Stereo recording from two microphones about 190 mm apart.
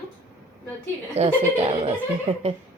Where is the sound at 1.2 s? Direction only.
30° right (ahead or behind).